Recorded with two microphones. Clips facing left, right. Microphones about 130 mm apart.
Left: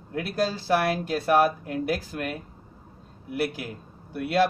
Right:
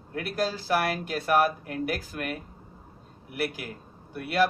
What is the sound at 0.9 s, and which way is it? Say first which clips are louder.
Speech: left 3 dB; 30° left (ahead or behind).